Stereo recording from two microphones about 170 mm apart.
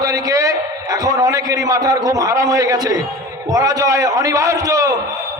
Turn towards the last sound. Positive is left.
turn(degrees=-20)  # may be behind; listen again after turning